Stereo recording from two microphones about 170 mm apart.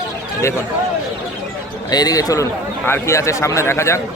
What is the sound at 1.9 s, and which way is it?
A man's voice, 20° left (ahead or behind).